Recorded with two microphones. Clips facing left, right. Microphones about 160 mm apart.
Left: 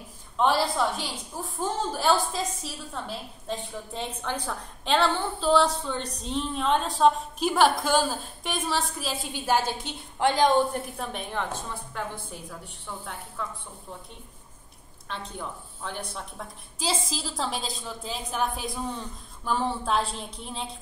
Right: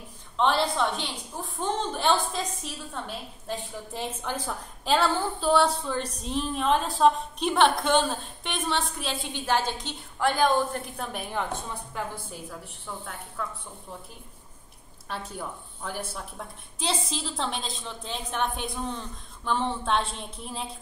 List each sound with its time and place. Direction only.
0.4 s a woman's voice: 5° left (ahead or behind)
11.0 s a woman's voice: 5° right (ahead or behind)
15.0 s a woman's voice: 5° right (ahead or behind)